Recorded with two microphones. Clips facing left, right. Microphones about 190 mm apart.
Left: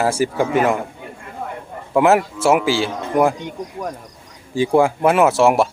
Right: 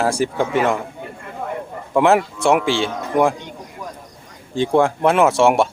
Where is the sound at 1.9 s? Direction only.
5° left (ahead or behind).